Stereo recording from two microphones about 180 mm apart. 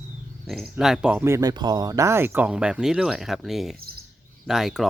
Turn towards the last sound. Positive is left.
turn(degrees=0)  # may be behind; listen again after turning